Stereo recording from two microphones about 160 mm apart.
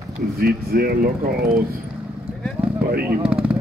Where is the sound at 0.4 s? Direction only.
70° right (ahead or behind).